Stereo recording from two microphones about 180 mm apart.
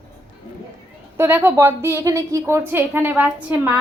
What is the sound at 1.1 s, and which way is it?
A woman's voice, 15° right (ahead or behind).